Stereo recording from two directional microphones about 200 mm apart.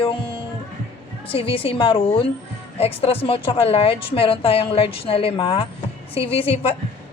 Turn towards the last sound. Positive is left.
turn(degrees=30)  # may be behind; listen again after turning